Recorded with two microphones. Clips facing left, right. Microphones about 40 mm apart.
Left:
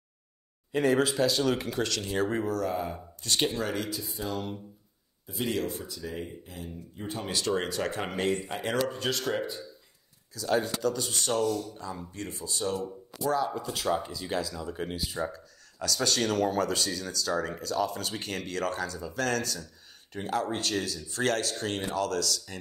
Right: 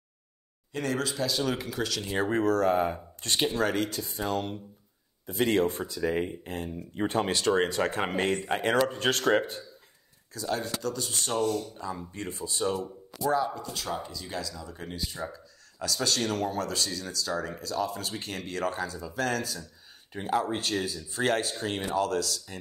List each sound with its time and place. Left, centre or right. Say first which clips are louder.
0.7 s speech: left 6 dB; centre
1.3 s speech: left 2 dB; centre
2.1 s speech: right 2 dB; right
2.5 s speech: right 6 dB; right
7.3 s speech: even; right
10.5 s speech: left 4 dB; centre
11.4 s speech: even; right
12.1 s speech: right 1 dB; right
12.7 s speech: even; centre; by 14.8 s left
15.0 s speech: left 3 dB; centre
15.8 s speech: left 1 dB; centre